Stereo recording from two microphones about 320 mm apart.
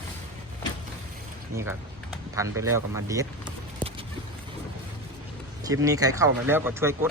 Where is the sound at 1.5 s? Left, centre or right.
Centre.